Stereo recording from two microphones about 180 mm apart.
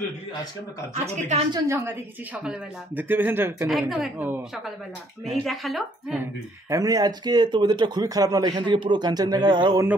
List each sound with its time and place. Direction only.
1.0 s a woman's voice: 35° right (ahead or behind)
1.5 s speech: 15° right (ahead or behind)
3.0 s a woman's voice: 10° right (ahead or behind)
6.7 s a man's voice: 20° right (ahead or behind)